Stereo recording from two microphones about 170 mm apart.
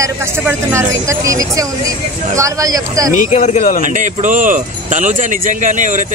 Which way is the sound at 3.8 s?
50° right (ahead or behind).